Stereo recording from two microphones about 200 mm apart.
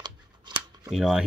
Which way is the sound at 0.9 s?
Centre (ahead or behind).